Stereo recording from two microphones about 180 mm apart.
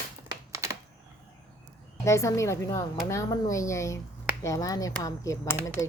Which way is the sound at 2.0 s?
15° left (ahead or behind).